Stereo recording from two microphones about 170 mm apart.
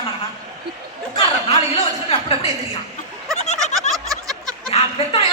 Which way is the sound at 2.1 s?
35° left (ahead or behind).